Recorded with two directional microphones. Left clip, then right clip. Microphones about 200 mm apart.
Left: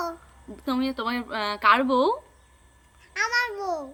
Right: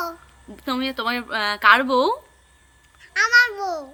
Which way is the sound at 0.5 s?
10° right (ahead or behind).